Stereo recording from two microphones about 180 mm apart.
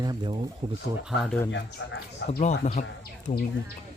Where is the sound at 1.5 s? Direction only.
90° left.